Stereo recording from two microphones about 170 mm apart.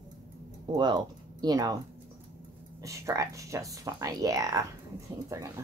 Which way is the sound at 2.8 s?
20° right (ahead or behind).